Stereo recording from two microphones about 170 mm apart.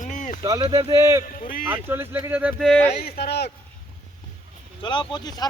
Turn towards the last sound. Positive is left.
turn(degrees=25)  # may be behind; listen again after turning